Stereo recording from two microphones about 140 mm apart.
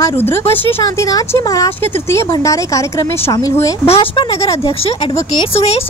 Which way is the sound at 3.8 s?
40° left (ahead or behind).